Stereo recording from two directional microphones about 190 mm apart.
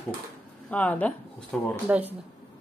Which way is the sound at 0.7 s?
10° left (ahead or behind).